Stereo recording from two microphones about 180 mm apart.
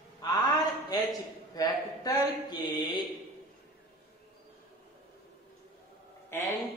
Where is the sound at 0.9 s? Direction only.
20° left (ahead or behind).